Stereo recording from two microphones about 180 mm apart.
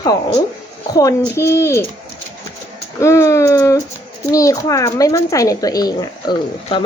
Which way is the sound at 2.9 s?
15° left (ahead or behind).